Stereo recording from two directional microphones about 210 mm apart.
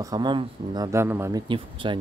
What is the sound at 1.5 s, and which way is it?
Speech, 25° right (ahead or behind).